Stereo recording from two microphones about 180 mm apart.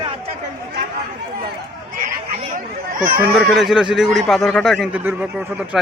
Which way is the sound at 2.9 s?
50° right (ahead or behind).